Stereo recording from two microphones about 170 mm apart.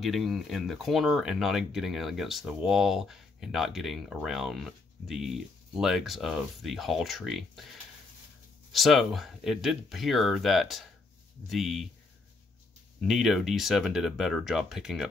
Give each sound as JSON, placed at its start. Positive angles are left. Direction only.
{"t": 0.0, "sound": "speech", "side_deg": 0}
{"t": 8.7, "sound": "speech", "side_deg": 0}
{"t": 13.0, "sound": "speech", "side_deg": 0}